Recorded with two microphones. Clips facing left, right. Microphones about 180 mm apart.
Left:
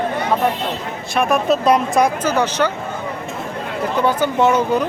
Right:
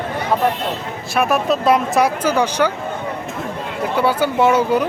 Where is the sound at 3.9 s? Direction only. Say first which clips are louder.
Right 1 dB; 10° right (ahead or behind).